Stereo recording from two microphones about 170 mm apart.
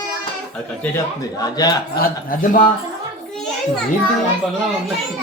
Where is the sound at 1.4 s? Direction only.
20° left (ahead or behind).